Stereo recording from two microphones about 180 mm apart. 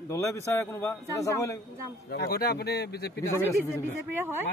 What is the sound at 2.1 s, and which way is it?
Speech, 60° left (ahead or behind).